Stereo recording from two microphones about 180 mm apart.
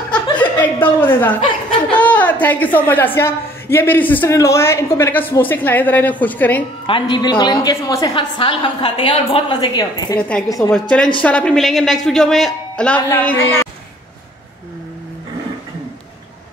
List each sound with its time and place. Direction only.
0.1 s chuckle: 10° left (ahead or behind)
1.9 s a sound: 10° left (ahead or behind)
3.2 s a woman's voice: 15° left (ahead or behind)
6.9 s a woman's voice: 25° left (ahead or behind)
8.1 s a woman's voice: 30° left (ahead or behind)
10.7 s speech: 5° left (ahead or behind)